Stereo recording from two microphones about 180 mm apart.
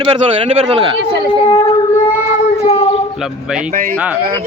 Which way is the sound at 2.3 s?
35° left (ahead or behind).